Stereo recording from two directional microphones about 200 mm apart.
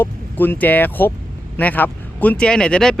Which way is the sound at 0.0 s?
10° left (ahead or behind).